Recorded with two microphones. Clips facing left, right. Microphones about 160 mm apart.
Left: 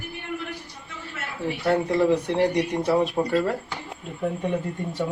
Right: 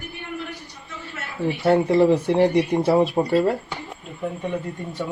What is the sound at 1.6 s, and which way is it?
Speech, 30° right (ahead or behind).